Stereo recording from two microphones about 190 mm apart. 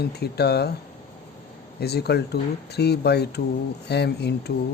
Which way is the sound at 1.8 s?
60° left (ahead or behind).